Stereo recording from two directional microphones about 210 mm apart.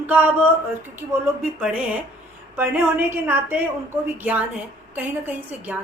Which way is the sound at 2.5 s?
10° right (ahead or behind).